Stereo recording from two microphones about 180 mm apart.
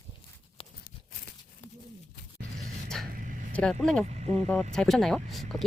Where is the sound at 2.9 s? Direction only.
5° left (ahead or behind).